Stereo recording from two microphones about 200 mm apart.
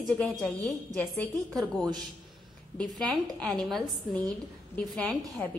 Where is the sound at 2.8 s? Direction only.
Centre (ahead or behind).